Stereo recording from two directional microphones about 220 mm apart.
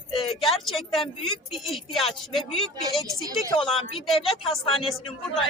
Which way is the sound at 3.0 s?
15° right (ahead or behind).